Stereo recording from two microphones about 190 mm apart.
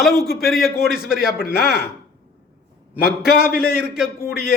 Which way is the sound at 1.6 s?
55° left (ahead or behind).